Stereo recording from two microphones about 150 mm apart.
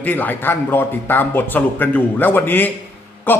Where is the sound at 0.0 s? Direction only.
10° left (ahead or behind).